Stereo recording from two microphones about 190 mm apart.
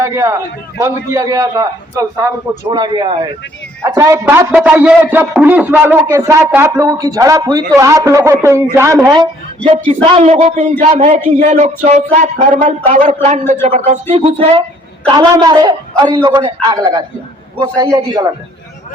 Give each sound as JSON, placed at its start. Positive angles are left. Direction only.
{"t": 0.0, "sound": "a man's voice", "side_deg": -15}
{"t": 9.6, "sound": "a man's voice", "side_deg": -30}